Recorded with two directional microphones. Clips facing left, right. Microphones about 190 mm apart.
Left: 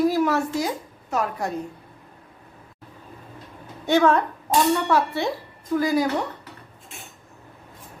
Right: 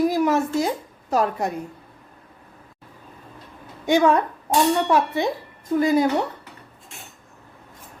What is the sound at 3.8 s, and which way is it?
A woman's voice, 15° right (ahead or behind).